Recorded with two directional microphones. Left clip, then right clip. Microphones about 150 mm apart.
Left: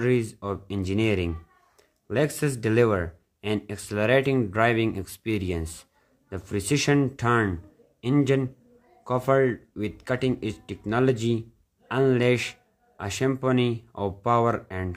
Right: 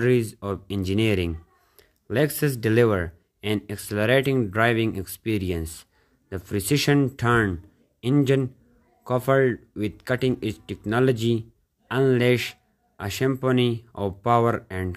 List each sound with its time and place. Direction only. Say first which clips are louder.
0.0 s speech: right 3 dB; 20° right (ahead or behind)